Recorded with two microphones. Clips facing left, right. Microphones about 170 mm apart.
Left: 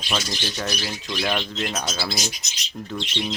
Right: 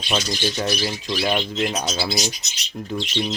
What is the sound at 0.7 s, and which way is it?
Speech, 5° right (ahead or behind).